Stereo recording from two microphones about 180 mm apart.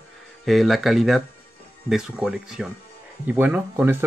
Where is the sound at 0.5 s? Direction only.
Centre (ahead or behind).